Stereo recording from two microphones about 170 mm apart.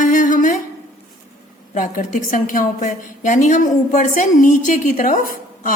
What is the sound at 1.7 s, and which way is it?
A woman's voice, 50° left (ahead or behind).